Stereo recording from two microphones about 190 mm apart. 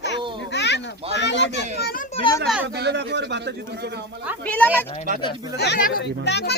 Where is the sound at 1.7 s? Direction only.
55° left (ahead or behind).